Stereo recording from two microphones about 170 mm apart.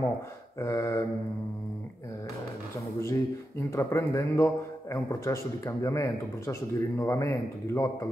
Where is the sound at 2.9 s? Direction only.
15° left (ahead or behind).